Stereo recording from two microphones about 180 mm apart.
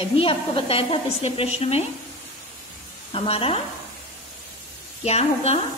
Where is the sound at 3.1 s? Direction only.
30° left (ahead or behind).